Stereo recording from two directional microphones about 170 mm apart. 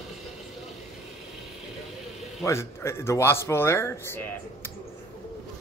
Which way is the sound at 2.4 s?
15° left (ahead or behind).